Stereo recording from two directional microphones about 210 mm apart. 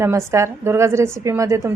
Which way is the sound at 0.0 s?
15° right (ahead or behind).